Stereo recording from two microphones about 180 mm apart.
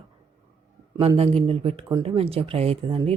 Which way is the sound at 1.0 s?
35° right (ahead or behind).